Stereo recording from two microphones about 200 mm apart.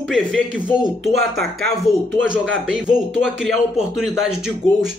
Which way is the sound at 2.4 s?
75° right (ahead or behind).